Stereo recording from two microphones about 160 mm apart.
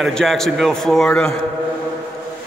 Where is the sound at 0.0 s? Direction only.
Centre (ahead or behind).